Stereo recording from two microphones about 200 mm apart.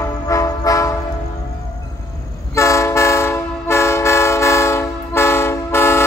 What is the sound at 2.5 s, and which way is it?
Train, 15° left (ahead or behind).